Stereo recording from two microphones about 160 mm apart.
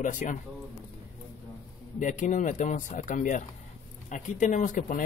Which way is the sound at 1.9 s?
55° left (ahead or behind).